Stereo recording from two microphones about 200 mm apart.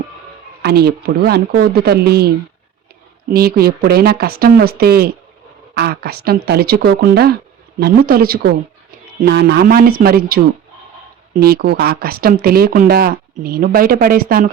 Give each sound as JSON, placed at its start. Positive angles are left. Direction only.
{"t": 0.6, "sound": "speech", "side_deg": -50}